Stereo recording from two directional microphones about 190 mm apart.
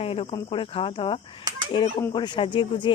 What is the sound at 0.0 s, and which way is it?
Speech, 30° left (ahead or behind).